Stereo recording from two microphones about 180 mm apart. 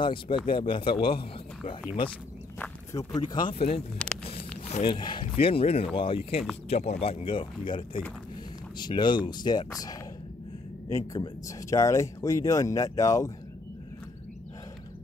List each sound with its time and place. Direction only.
0.0 s speech: 30° left (ahead or behind)
2.6 s walk: 15° left (ahead or behind)
3.2 s speech: 25° left (ahead or behind)
4.3 s a sound: 35° left (ahead or behind)
5.4 s speech: 30° left (ahead or behind)